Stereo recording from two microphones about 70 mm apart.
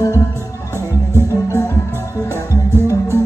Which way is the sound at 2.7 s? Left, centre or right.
Right.